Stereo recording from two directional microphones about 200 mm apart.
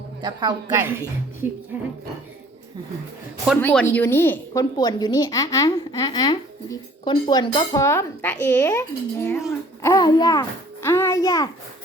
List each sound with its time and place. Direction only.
0.2 s a woman's voice: 20° right (ahead or behind)
3.6 s a woman's voice: 10° left (ahead or behind)